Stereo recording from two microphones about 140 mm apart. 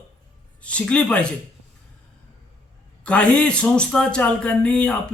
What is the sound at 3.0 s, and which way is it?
Speech, 10° left (ahead or behind).